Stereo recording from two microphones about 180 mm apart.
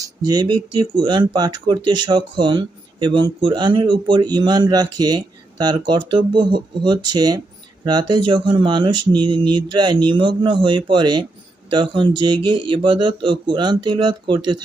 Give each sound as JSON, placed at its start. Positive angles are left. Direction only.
{"t": 0.0, "sound": "speech", "side_deg": -20}